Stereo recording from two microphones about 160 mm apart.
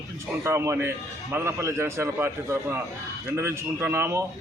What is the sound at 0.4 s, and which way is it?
Speech, 15° right (ahead or behind).